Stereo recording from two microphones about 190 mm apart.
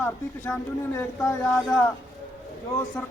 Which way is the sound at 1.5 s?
Centre (ahead or behind).